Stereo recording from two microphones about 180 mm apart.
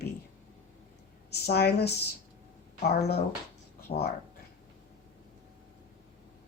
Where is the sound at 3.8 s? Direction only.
60° left (ahead or behind).